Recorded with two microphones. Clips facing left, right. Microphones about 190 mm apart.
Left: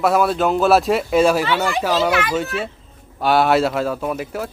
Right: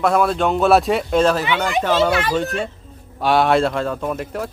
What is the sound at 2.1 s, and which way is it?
Speech, 30° right (ahead or behind).